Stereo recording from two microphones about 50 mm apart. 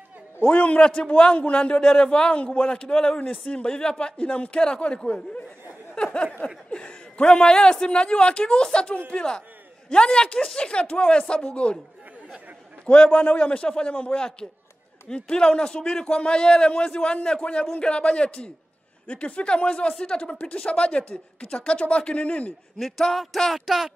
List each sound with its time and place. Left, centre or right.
0.4 s a man's voice: left
5.9 s a sound: centre
6.4 s a man's voice: centre
12.8 s a man's voice: left
22.8 s speech: centre